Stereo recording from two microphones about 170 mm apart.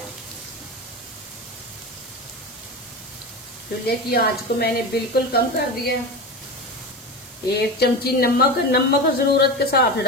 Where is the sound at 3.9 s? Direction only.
65° left (ahead or behind).